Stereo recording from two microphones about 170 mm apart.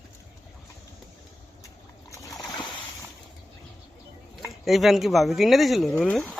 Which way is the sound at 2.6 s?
30° left (ahead or behind).